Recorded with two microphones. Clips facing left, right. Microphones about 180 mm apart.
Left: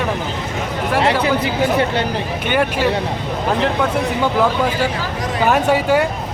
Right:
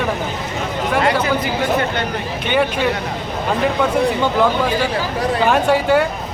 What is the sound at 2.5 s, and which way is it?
Speech, 5° left (ahead or behind).